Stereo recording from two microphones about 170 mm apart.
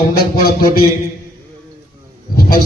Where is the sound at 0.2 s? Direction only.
65° left (ahead or behind).